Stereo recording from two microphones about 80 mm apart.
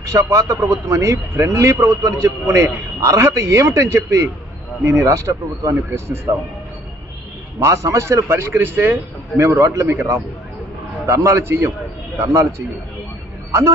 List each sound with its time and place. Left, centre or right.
0.1 s a man's voice: right
7.5 s a man's voice: right
8.5 s speech: right
9.4 s a man's voice: right
11.1 s a man's voice: right